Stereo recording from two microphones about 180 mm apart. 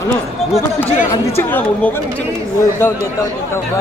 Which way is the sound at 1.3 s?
10° left (ahead or behind).